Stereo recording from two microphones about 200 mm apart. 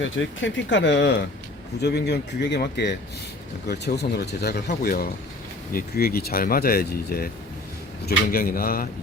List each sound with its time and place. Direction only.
0.0 s speech: 65° left (ahead or behind); by 8.9 s 45° left (ahead or behind)